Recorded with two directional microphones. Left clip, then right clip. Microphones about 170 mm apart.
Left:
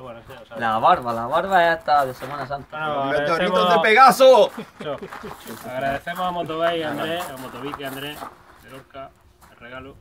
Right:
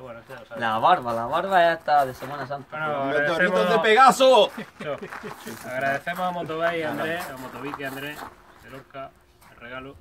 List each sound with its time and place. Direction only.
0.6 s speech: 5° left (ahead or behind)
2.7 s speech: 20° right (ahead or behind)
3.5 s speech: 20° left (ahead or behind)
5.7 s speech: 15° right (ahead or behind)